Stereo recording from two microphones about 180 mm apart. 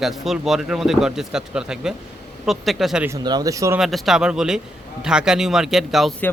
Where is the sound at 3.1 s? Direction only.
25° right (ahead or behind).